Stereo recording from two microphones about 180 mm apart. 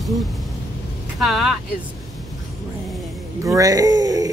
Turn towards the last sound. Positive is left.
turn(degrees=-20)  # may be behind; listen again after turning